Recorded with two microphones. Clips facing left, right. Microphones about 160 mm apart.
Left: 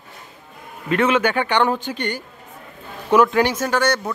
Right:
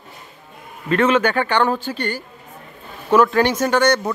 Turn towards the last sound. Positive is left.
turn(degrees=0)  # may be behind; listen again after turning